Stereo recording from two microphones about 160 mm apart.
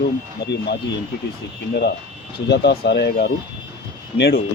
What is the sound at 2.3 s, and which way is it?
A man's voice, 90° left.